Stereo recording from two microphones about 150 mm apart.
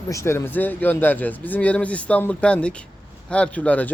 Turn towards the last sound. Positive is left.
turn(degrees=10)  # may be behind; listen again after turning